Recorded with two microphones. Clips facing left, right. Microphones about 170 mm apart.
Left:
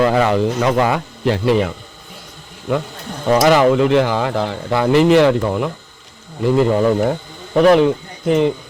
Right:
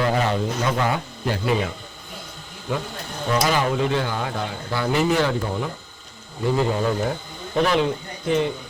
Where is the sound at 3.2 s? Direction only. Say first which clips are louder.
Left 9 dB; 80° left.